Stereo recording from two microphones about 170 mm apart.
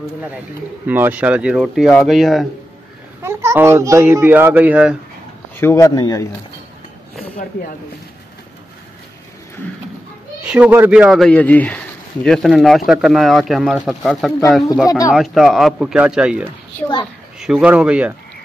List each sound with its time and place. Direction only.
0.8 s speech: 10° right (ahead or behind)
3.2 s a child's voice: 15° right (ahead or behind)
5.6 s speech: 15° left (ahead or behind)
10.4 s a child's voice: 5° right (ahead or behind)